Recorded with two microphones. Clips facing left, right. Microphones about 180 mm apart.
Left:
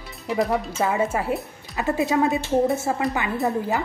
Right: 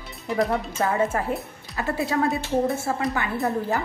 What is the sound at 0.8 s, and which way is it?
Speech, 15° left (ahead or behind).